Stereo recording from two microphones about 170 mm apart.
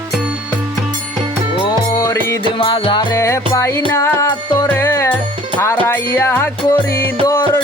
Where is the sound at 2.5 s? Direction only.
30° left (ahead or behind).